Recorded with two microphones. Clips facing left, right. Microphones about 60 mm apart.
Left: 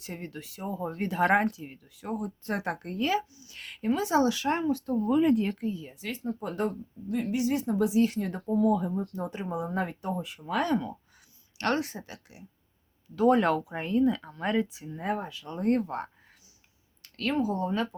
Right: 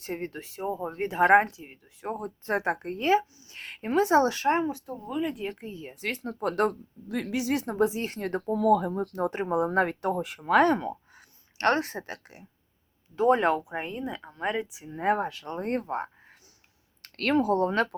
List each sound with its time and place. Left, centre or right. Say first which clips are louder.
0.0 s speech: right 5 dB; right
4.5 s speech: right 1 dB; right
5.0 s speech: left 7 dB; centre
5.5 s speech: left 6 dB; right
6.0 s speech: right 3 dB; right
7.9 s speech: left 5 dB; right
10.7 s speech: right 3 dB; right
13.1 s speech: even; right
14.9 s speech: right 6 dB; right
15.5 s speech: left 3 dB; right
17.0 s speech: right 4 dB; right